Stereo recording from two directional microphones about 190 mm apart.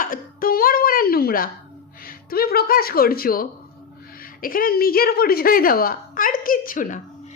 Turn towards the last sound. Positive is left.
turn(degrees=45)  # may be behind; listen again after turning